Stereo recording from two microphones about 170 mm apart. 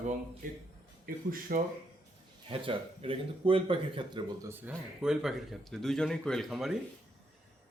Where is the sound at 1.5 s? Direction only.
55° right (ahead or behind).